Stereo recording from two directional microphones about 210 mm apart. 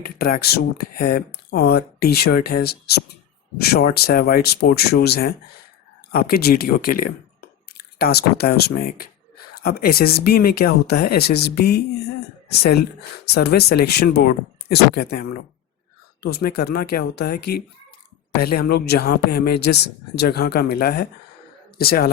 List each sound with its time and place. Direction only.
0.2 s speech: 45° left (ahead or behind)